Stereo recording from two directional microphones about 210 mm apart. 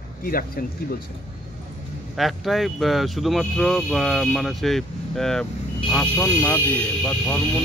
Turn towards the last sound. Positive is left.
turn(degrees=5)  # may be behind; listen again after turning